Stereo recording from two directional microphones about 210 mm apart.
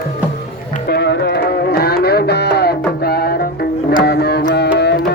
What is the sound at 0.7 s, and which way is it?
Music, 50° left (ahead or behind).